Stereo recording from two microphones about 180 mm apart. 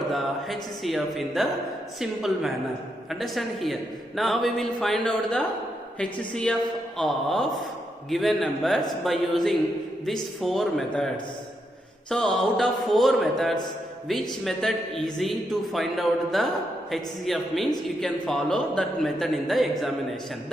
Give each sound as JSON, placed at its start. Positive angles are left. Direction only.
{"t": 0.1, "sound": "a man's voice", "side_deg": 0}